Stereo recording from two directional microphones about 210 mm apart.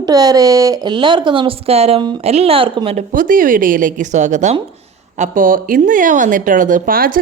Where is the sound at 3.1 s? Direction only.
40° right (ahead or behind).